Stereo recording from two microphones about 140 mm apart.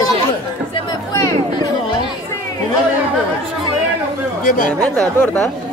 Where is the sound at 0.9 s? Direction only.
25° left (ahead or behind).